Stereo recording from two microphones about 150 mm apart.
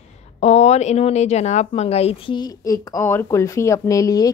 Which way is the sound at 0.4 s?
45° left (ahead or behind).